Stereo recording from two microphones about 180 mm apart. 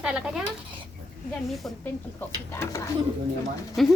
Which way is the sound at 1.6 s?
5° left (ahead or behind).